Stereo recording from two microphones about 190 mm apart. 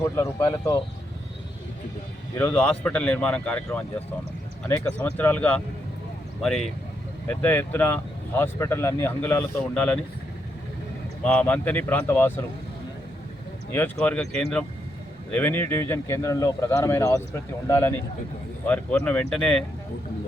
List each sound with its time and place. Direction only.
0.0 s speech: 15° left (ahead or behind)
2.3 s speech: 10° left (ahead or behind)
11.2 s speech: 5° left (ahead or behind)
13.7 s speech: 10° left (ahead or behind)